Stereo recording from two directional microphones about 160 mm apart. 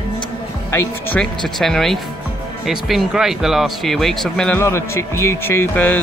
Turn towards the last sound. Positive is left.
turn(degrees=10)  # may be behind; listen again after turning